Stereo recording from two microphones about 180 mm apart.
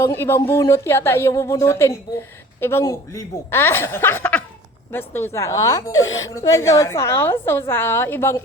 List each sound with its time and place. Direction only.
0.0 s speech: 15° left (ahead or behind)